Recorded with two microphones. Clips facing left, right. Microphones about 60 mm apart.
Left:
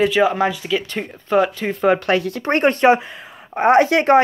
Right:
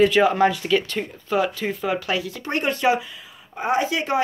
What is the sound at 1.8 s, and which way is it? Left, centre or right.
Speech, left.